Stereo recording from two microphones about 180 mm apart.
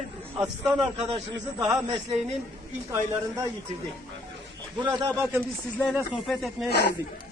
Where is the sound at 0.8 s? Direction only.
30° right (ahead or behind).